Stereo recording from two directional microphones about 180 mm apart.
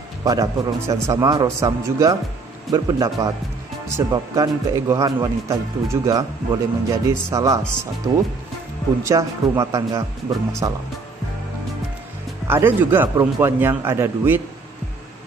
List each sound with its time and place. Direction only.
0.2 s a man's voice: 20° right (ahead or behind)
12.4 s a man's voice: 15° right (ahead or behind)